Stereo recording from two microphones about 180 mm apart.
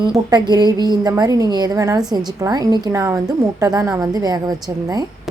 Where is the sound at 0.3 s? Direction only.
25° right (ahead or behind).